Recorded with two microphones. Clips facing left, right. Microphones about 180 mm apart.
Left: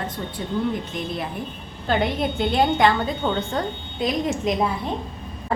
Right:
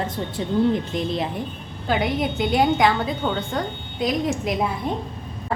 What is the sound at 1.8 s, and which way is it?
A woman's voice, 10° right (ahead or behind).